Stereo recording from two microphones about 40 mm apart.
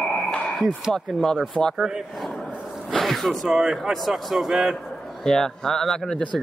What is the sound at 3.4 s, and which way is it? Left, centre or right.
Speech, centre.